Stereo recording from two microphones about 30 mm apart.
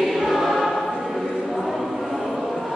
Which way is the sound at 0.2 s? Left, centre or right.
Centre.